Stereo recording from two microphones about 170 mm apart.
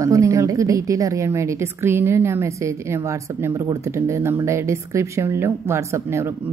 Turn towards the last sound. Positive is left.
turn(degrees=-15)  # may be behind; listen again after turning